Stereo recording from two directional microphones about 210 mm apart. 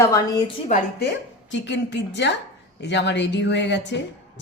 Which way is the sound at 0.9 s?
55° left (ahead or behind).